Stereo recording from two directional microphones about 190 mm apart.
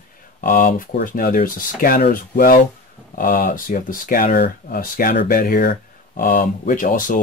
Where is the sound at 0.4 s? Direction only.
45° left (ahead or behind).